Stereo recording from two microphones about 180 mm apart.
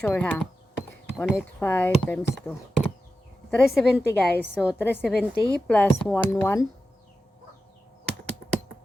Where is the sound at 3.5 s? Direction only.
Centre (ahead or behind).